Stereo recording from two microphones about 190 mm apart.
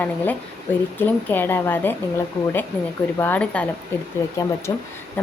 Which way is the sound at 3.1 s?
10° left (ahead or behind).